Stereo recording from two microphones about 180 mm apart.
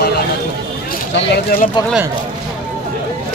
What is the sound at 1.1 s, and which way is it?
Speech, 70° left (ahead or behind).